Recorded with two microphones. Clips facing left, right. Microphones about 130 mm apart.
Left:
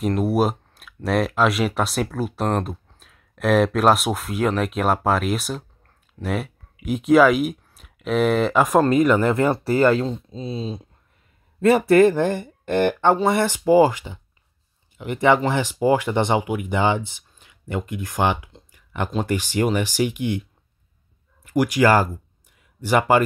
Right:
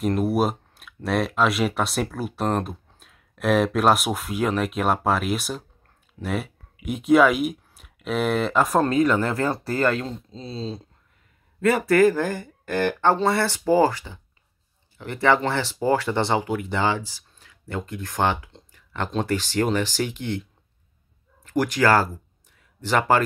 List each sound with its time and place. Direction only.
0.0 s speech: centre (ahead or behind)
10.0 s speech: 20° left (ahead or behind)
21.5 s speech: 10° left (ahead or behind)